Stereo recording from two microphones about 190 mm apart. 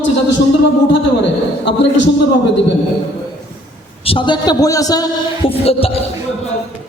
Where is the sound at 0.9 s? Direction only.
70° left (ahead or behind).